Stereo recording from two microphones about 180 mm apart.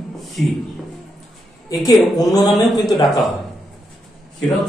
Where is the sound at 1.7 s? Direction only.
20° left (ahead or behind).